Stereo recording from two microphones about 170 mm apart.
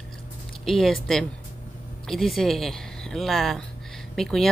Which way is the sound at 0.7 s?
Centre (ahead or behind).